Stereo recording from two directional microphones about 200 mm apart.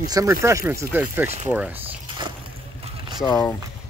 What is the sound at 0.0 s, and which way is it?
Speech, 15° right (ahead or behind).